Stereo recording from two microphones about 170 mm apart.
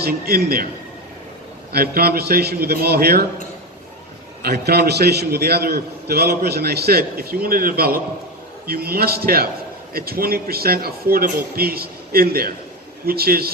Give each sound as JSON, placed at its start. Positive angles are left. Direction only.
{"t": 0.0, "sound": "speech", "side_deg": -65}
{"t": 1.7, "sound": "a man's voice", "side_deg": -65}
{"t": 4.4, "sound": "a man's voice", "side_deg": -70}